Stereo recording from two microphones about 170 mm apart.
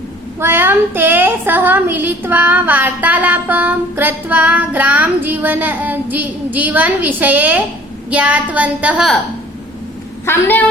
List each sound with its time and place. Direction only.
0.3 s a woman's voice: 15° right (ahead or behind)
10.2 s a woman's voice: 10° left (ahead or behind)